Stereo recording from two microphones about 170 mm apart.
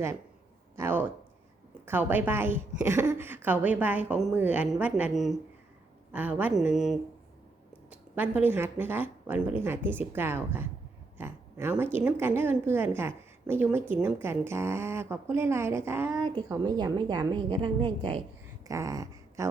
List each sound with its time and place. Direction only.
0.8 s a woman's voice: 15° right (ahead or behind)
16.2 s a woman's voice: 25° right (ahead or behind)
18.7 s speech: 20° right (ahead or behind)